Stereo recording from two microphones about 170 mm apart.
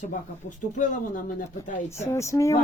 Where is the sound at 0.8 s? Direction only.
50° left (ahead or behind).